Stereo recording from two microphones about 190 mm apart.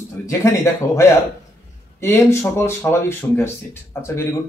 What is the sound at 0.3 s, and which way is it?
A man's voice, 15° left (ahead or behind).